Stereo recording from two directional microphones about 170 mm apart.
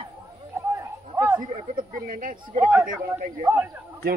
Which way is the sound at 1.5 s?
55° right (ahead or behind).